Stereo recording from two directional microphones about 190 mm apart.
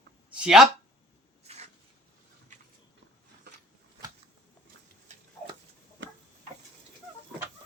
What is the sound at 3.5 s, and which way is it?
Shuffling cards, 60° right (ahead or behind).